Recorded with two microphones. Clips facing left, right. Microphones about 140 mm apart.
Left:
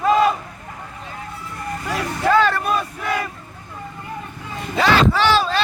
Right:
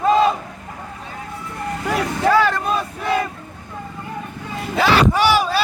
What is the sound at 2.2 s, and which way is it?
Speech, 10° right (ahead or behind).